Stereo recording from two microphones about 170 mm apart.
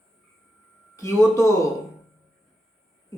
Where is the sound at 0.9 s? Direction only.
15° left (ahead or behind).